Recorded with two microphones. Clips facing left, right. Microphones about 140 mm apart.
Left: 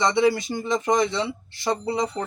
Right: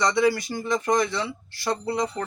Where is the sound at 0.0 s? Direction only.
25° left (ahead or behind).